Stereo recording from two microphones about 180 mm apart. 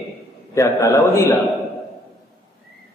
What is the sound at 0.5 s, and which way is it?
Speech, 15° left (ahead or behind).